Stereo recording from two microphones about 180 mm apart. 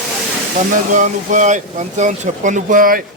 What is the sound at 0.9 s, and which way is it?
Speech, 45° right (ahead or behind).